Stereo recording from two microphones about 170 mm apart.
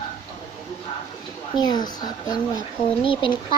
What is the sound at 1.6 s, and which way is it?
Speech, 25° left (ahead or behind).